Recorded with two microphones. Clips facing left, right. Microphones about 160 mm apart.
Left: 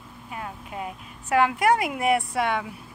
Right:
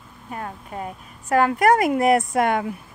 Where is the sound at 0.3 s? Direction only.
40° right (ahead or behind).